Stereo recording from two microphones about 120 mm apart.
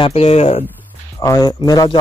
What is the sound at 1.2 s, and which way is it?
Speech, 30° left (ahead or behind).